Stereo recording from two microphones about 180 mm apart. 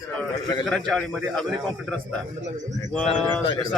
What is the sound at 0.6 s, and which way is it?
Speech, 5° left (ahead or behind).